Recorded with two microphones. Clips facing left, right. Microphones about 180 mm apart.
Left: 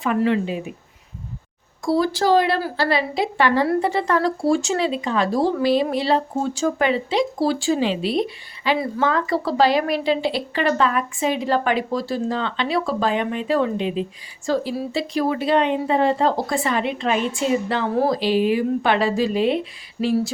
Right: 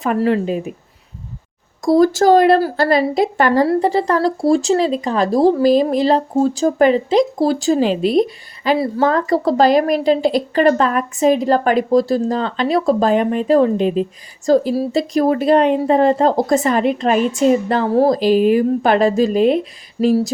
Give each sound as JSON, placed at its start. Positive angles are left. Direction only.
{"t": 0.0, "sound": "speech", "side_deg": -40}
{"t": 1.8, "sound": "a woman's voice", "side_deg": -45}